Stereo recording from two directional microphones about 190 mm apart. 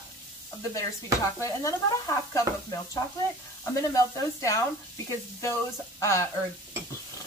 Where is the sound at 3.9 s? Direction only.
15° left (ahead or behind).